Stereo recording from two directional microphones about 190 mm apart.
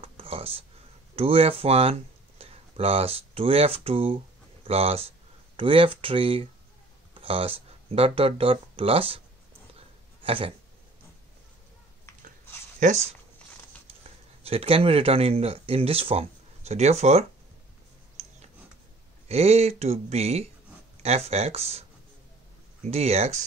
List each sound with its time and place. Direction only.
0.0 s a sound: 30° right (ahead or behind)
1.1 s speech: 30° right (ahead or behind)
9.8 s a sound: 30° right (ahead or behind)
12.8 s speech: 40° right (ahead or behind)
14.4 s speech: 30° right (ahead or behind)
19.2 s speech: 35° right (ahead or behind)
22.8 s speech: 35° right (ahead or behind)